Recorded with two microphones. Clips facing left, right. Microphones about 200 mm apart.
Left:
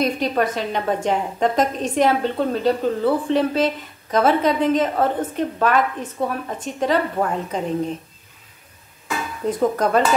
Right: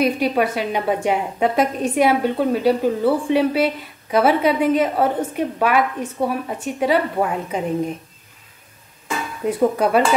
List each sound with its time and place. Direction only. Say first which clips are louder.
0.0 s a woman's voice: right 2 dB; 10° right (ahead or behind)
9.4 s a woman's voice: right 2 dB; 10° right (ahead or behind)